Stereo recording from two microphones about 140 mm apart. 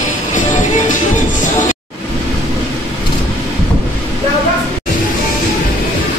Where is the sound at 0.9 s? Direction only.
65° left (ahead or behind).